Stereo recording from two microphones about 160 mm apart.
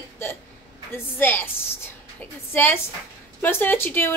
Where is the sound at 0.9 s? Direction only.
10° left (ahead or behind).